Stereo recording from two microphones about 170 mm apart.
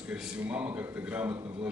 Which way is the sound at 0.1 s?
5° right (ahead or behind).